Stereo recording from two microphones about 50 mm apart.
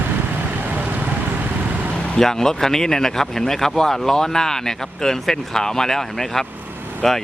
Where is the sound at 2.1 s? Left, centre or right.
Centre.